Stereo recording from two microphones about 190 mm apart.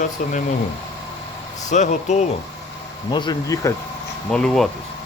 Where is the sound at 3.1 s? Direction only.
25° left (ahead or behind).